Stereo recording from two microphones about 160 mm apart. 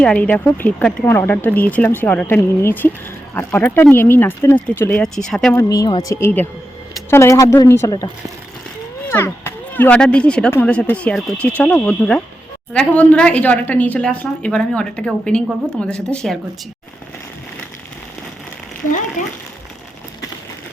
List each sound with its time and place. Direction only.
0.0 s a woman's voice: 10° left (ahead or behind)
5.5 s a woman's voice: 20° left (ahead or behind); by 16.4 s 5° left (ahead or behind)